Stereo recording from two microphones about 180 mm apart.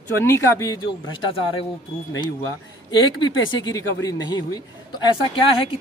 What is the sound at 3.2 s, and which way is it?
A man's voice, 25° left (ahead or behind).